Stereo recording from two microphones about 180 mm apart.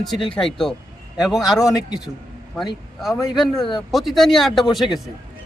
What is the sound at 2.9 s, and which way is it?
Speech, centre (ahead or behind).